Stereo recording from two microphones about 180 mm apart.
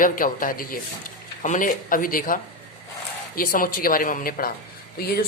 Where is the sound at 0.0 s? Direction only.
50° left (ahead or behind).